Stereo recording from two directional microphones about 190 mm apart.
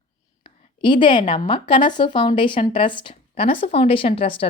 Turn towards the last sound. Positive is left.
turn(degrees=30)  # may be behind; listen again after turning